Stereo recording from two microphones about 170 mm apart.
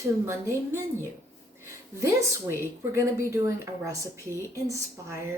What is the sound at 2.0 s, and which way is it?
Speech, 15° right (ahead or behind).